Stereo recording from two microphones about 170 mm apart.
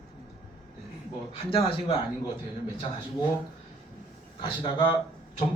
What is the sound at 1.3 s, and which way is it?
Speech, 35° left (ahead or behind).